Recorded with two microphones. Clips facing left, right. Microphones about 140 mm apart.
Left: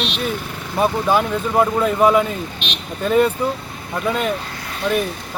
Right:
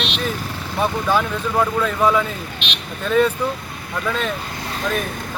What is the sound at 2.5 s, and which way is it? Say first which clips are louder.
Vehicle: left 1 dB; 40° left (ahead or behind).